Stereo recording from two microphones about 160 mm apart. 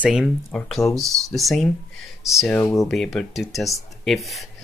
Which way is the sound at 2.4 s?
15° left (ahead or behind).